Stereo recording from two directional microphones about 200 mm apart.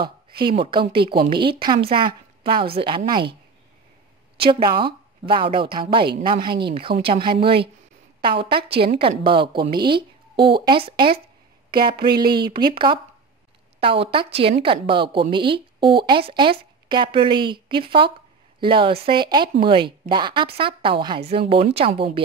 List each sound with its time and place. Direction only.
0.5 s speech: 25° right (ahead or behind)
4.4 s speech: 25° right (ahead or behind)